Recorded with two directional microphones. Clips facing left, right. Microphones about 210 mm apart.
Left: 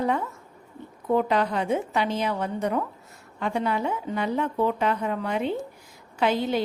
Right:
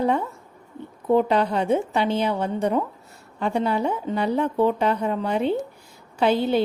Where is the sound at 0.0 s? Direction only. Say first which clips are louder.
Right 3 dB; 30° right (ahead or behind).